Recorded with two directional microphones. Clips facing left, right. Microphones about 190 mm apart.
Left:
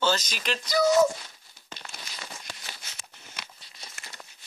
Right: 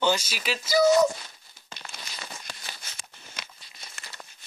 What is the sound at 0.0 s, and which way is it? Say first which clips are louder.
Speech: right 1 dB; 10° right (ahead or behind).